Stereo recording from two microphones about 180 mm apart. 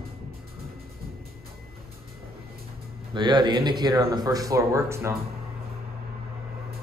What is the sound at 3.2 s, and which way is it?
Speech, 25° right (ahead or behind).